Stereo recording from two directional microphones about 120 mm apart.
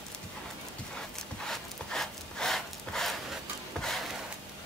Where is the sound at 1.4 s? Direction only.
5° left (ahead or behind).